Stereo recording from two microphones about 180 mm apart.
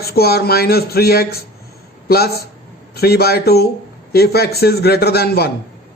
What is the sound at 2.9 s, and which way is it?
Speech, 60° left (ahead or behind).